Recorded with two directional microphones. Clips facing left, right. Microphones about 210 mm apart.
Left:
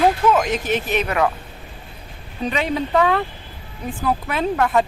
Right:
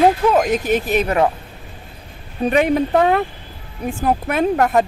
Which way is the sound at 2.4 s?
50° right (ahead or behind).